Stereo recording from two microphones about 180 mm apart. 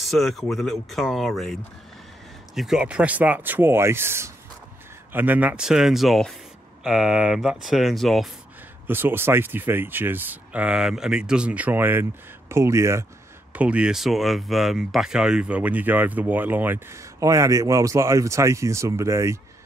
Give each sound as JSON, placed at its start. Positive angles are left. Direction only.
{"t": 0.0, "sound": "speech", "side_deg": 0}
{"t": 8.8, "sound": "speech", "side_deg": -10}